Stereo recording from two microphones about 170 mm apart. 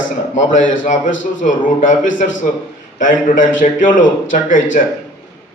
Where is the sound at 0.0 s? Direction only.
50° left (ahead or behind).